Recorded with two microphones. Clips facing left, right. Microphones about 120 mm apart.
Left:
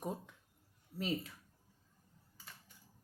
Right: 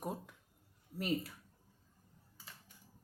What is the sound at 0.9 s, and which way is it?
Speech, 5° right (ahead or behind).